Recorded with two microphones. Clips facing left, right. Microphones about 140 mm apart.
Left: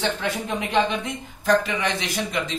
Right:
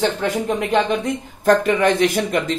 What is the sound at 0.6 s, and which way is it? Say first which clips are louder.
Speech: right 1 dB; 45° right (ahead or behind).